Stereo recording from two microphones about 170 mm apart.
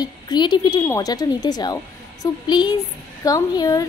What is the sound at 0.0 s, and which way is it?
Speech, 25° left (ahead or behind).